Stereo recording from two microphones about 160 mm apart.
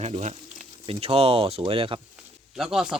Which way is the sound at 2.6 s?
Centre (ahead or behind).